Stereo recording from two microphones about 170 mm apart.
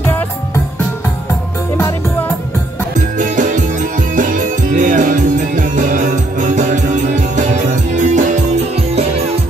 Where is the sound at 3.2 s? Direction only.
50° right (ahead or behind).